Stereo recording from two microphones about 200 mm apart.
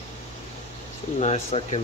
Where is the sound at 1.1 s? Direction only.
30° left (ahead or behind).